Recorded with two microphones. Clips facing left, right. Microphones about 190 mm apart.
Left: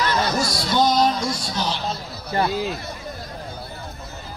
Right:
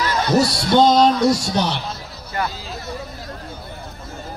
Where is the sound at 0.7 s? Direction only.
60° right (ahead or behind).